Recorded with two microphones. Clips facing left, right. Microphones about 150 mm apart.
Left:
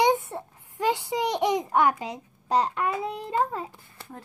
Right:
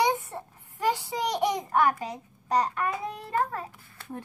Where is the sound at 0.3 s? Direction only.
20° left (ahead or behind).